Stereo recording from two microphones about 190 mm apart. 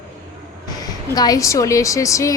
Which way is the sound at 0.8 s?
20° left (ahead or behind).